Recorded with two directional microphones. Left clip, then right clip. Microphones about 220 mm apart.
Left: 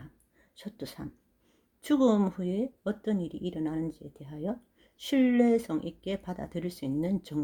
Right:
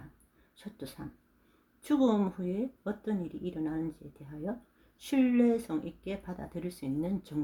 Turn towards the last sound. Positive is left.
turn(degrees=35)  # may be behind; listen again after turning